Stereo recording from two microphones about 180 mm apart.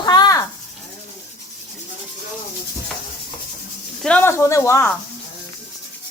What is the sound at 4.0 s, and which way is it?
Speech, 10° left (ahead or behind).